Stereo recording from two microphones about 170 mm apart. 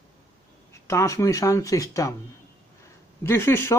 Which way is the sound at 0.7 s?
15° left (ahead or behind).